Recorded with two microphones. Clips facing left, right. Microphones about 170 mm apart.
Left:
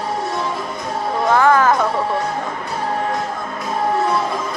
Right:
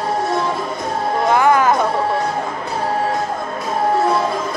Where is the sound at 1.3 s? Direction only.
15° right (ahead or behind).